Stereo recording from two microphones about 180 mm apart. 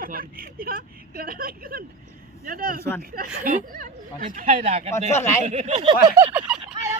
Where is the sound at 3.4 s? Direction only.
50° right (ahead or behind).